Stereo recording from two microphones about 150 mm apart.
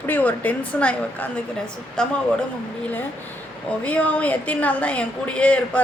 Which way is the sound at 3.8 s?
10° left (ahead or behind).